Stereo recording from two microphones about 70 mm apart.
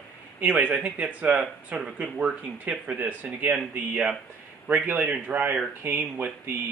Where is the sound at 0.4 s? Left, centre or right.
Right.